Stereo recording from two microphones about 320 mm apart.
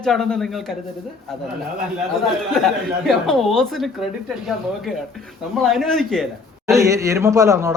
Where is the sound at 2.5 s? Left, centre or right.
Centre.